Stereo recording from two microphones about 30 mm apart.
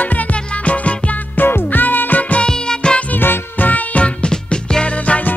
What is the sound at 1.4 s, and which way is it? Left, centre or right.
Music, left.